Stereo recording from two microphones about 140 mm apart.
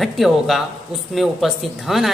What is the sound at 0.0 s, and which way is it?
Speech, centre (ahead or behind).